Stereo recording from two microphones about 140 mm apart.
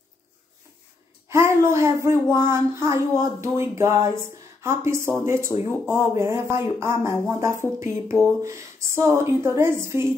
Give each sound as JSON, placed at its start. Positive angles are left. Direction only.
{"t": 1.3, "sound": "speech", "side_deg": -20}